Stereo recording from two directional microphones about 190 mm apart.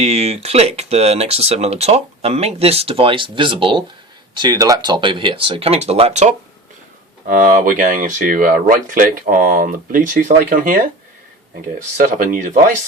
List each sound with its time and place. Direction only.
0.0 s speech: 35° right (ahead or behind)
7.3 s speech: 45° right (ahead or behind)
11.9 s speech: 45° right (ahead or behind)